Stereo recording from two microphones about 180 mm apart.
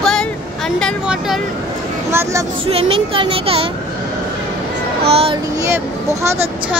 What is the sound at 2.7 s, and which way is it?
Speech, 30° right (ahead or behind).